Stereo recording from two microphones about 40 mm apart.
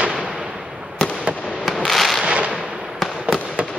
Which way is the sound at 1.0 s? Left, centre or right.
Centre.